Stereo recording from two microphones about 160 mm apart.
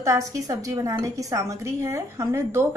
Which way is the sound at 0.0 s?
20° right (ahead or behind).